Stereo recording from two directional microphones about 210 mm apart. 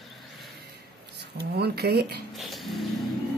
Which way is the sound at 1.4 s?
50° right (ahead or behind).